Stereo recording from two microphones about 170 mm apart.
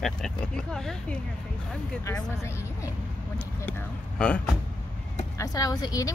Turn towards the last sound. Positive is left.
turn(degrees=20)  # may be behind; listen again after turning